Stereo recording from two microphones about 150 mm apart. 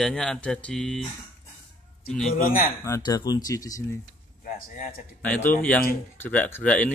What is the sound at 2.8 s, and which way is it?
Speech, 20° left (ahead or behind).